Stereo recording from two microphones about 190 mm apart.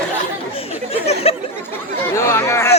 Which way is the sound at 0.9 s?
35° left (ahead or behind).